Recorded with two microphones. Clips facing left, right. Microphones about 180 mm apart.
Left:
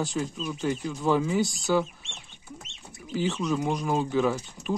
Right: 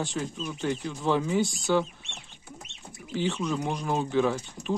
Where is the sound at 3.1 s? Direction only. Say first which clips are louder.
Left 1 dB; 5° left (ahead or behind).